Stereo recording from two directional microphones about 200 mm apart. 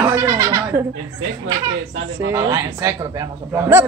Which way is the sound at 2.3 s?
15° right (ahead or behind).